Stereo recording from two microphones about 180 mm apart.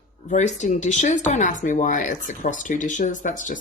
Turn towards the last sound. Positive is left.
turn(degrees=45)  # may be behind; listen again after turning